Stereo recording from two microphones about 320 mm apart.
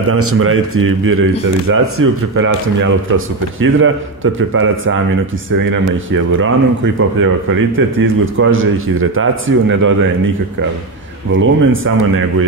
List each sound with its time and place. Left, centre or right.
0.1 s a man's voice: right
7.0 s a man's voice: right
11.3 s a man's voice: right